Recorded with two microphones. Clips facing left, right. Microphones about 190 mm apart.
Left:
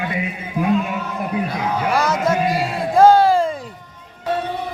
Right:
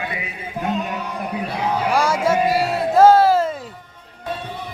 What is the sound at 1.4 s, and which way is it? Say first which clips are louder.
Speech: even; 30° right (ahead or behind).